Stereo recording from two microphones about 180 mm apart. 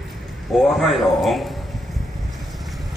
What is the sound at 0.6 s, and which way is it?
Speech, centre (ahead or behind).